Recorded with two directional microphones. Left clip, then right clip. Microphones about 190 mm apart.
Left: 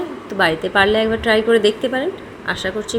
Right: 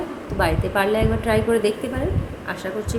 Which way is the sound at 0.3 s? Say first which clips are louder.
Left 6 dB; 15° left (ahead or behind).